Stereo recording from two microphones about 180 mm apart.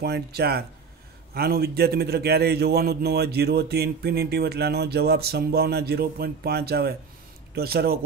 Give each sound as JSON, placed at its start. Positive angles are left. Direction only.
{"t": 0.0, "sound": "a man's voice", "side_deg": -60}